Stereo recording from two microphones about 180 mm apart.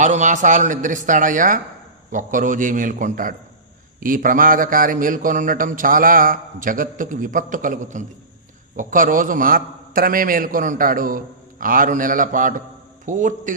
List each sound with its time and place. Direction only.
0.0 s a man's voice: 45° right (ahead or behind)